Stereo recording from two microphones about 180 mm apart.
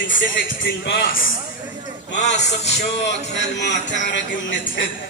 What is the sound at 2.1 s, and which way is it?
Speech, 75° left (ahead or behind).